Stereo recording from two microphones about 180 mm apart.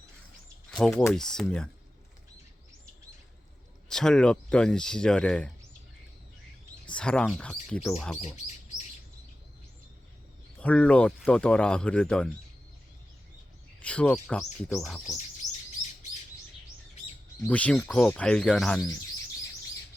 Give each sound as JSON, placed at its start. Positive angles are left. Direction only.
{"t": 0.7, "sound": "speech", "side_deg": 5}
{"t": 3.8, "sound": "speech", "side_deg": 5}
{"t": 6.9, "sound": "speech", "side_deg": 5}
{"t": 8.2, "sound": "chirp", "side_deg": 40}
{"t": 10.6, "sound": "speech", "side_deg": 5}
{"t": 13.8, "sound": "speech", "side_deg": 5}
{"t": 17.4, "sound": "speech", "side_deg": 5}